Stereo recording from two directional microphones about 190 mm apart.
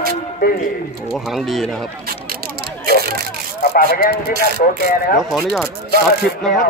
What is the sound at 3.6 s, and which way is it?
Speech, 50° left (ahead or behind).